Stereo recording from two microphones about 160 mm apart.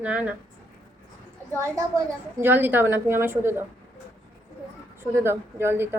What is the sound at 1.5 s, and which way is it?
A woman's voice, 15° right (ahead or behind).